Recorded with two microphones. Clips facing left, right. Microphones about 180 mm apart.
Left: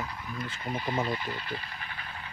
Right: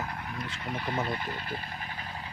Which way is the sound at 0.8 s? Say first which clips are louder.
Left 1 dB; 55° right (ahead or behind).